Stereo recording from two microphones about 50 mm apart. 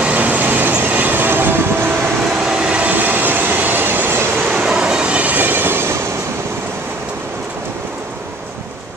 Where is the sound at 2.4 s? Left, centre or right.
Centre; by 4.3 s right.